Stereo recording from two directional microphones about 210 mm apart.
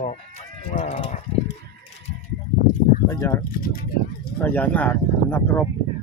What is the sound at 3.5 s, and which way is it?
Speech, 45° left (ahead or behind).